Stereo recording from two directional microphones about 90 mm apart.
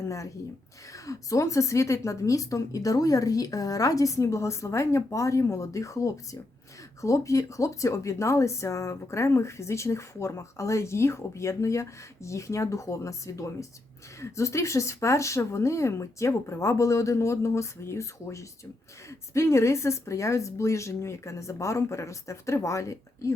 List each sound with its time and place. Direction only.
0.0 s speech: 35° left (ahead or behind)